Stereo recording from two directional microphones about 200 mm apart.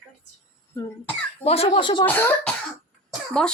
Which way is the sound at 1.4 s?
30° left (ahead or behind).